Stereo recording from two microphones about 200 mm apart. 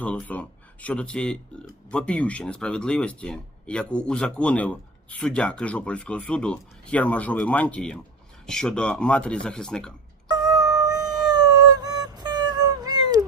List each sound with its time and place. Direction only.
0.0 s speech: 5° left (ahead or behind)
10.5 s howl: 15° right (ahead or behind)
11.2 s a sound: 20° right (ahead or behind)